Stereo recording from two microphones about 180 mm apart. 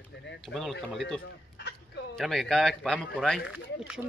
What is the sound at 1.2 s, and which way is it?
Chicken, 70° left (ahead or behind).